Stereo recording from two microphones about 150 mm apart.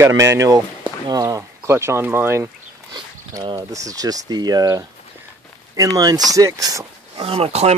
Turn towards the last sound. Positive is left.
turn(degrees=-45)  # may be behind; listen again after turning